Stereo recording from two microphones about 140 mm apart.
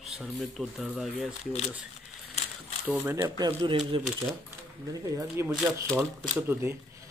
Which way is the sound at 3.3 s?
30° right (ahead or behind).